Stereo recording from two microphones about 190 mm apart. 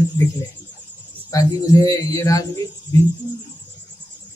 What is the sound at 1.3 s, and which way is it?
Speech, 20° left (ahead or behind).